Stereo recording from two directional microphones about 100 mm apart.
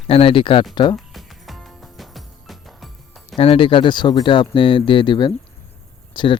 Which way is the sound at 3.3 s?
70° left (ahead or behind).